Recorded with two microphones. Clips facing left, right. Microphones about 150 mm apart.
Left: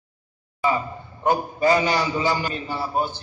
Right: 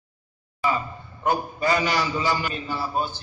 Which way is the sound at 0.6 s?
20° left (ahead or behind).